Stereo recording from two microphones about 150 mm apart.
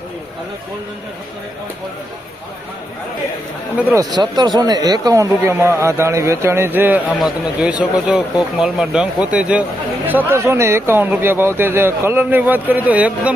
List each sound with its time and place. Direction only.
3.9 s speech: 25° right (ahead or behind)
7.1 s speech: centre (ahead or behind)